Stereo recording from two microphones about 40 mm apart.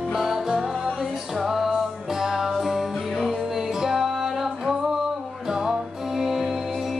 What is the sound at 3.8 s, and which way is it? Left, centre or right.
Music, centre.